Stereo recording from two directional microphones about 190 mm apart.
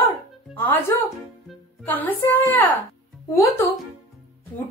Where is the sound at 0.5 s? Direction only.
10° left (ahead or behind).